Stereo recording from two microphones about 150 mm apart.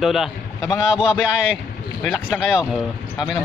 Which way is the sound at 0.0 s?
Centre (ahead or behind).